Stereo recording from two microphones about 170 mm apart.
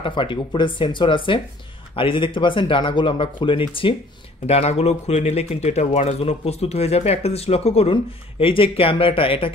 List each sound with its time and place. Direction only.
0.0 s speech: 30° left (ahead or behind)